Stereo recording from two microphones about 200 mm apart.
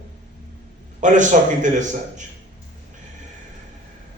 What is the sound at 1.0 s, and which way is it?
Speech, 40° right (ahead or behind).